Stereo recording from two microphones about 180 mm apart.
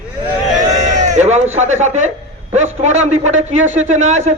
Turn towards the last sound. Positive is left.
turn(degrees=-40)  # may be behind; listen again after turning